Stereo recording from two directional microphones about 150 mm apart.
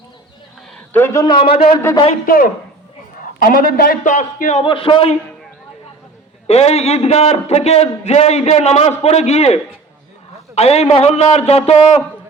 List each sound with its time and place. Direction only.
0.9 s a man's voice: 15° left (ahead or behind)
1.2 s a man's voice: 35° left (ahead or behind)
2.2 s a man's voice: 75° left (ahead or behind); by 4.6 s 55° left (ahead or behind)
4.6 s a man's voice: 35° left (ahead or behind)
6.5 s a man's voice: 45° left (ahead or behind)